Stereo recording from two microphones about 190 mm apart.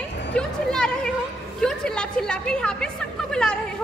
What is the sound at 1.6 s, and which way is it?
A woman's voice, 5° left (ahead or behind).